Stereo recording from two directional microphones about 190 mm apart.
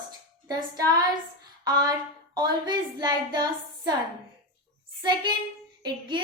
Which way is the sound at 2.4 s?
20° right (ahead or behind).